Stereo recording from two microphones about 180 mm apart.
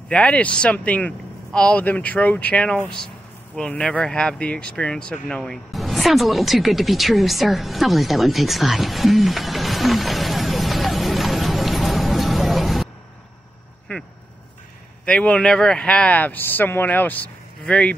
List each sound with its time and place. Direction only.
0.1 s speech: 5° left (ahead or behind)
13.9 s a sound: 10° left (ahead or behind)
15.0 s speech: 5° left (ahead or behind)